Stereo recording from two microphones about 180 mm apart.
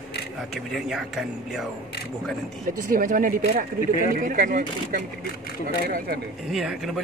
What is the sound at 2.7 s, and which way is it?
Speech, 50° right (ahead or behind).